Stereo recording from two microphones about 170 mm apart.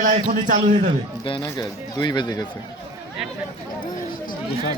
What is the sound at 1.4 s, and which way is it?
Speech, 20° left (ahead or behind).